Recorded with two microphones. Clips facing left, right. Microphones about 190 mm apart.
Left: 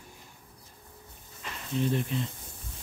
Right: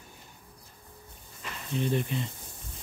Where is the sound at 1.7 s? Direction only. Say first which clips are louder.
Even; centre (ahead or behind).